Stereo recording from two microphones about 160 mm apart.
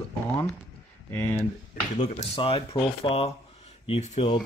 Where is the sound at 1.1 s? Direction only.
15° left (ahead or behind).